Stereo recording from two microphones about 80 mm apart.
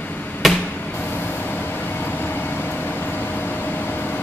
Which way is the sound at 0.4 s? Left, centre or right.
Centre.